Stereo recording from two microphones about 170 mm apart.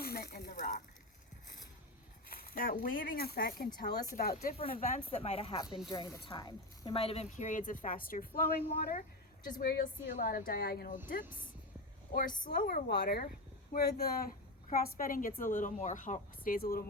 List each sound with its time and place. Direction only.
0.0 s a sound: 65° left (ahead or behind)
2.3 s a woman's voice: 60° left (ahead or behind)
3.8 s a woman's voice: 70° left (ahead or behind)
4.7 s a woman's voice: 50° left (ahead or behind)
12.1 s a woman's voice: 55° left (ahead or behind)
12.9 s a woman's voice: 65° left (ahead or behind)